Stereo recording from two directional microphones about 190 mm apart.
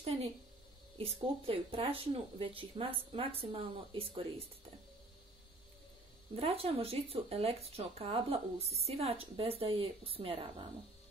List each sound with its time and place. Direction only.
0.9 s speech: 30° right (ahead or behind)
6.3 s speech: 30° right (ahead or behind)